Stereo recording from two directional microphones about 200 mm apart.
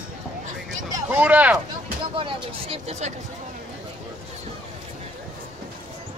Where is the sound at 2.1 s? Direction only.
25° right (ahead or behind).